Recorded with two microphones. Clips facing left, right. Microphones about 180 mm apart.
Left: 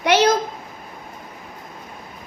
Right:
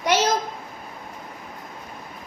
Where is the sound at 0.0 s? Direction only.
65° left (ahead or behind).